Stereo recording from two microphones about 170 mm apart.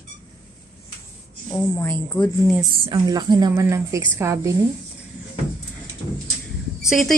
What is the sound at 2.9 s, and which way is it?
A woman's voice, 25° right (ahead or behind).